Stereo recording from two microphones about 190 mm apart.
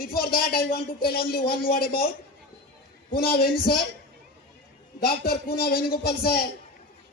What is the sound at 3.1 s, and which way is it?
Speech, 55° left (ahead or behind).